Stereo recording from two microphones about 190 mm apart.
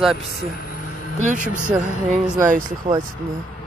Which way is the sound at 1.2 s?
40° right (ahead or behind).